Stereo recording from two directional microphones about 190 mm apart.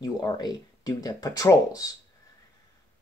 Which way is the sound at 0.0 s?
20° left (ahead or behind).